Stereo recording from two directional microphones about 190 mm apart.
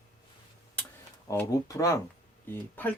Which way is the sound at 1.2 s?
15° left (ahead or behind).